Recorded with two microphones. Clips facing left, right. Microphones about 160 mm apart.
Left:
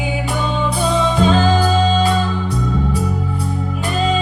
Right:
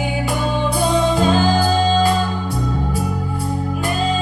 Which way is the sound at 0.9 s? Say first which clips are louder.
Left 1 dB; 45° right (ahead or behind).